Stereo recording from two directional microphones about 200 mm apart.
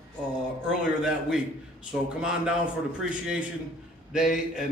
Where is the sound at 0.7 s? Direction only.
5° right (ahead or behind).